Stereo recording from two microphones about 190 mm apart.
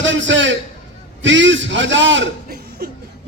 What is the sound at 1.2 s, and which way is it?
A man's voice, 75° right (ahead or behind).